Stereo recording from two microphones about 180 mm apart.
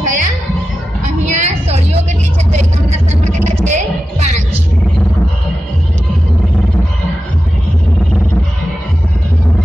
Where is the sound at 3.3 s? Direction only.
40° right (ahead or behind).